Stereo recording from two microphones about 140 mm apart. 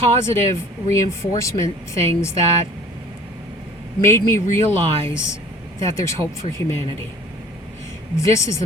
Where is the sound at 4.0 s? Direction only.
20° left (ahead or behind).